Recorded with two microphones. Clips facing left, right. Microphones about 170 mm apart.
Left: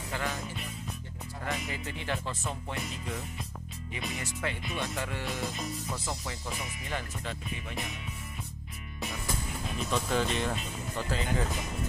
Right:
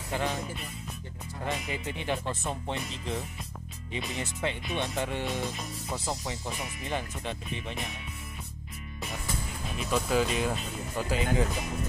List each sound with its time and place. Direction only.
0.1 s music: 20° right (ahead or behind)
1.4 s speech: 20° right (ahead or behind)
9.8 s speech: 5° right (ahead or behind)